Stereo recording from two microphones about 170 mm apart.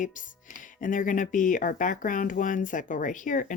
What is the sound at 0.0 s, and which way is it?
Speech, 50° left (ahead or behind).